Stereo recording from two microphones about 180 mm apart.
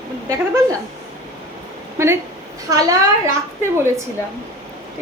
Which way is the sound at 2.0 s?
15° right (ahead or behind).